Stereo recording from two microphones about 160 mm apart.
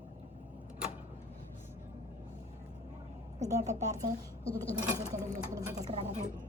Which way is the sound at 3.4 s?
45° right (ahead or behind).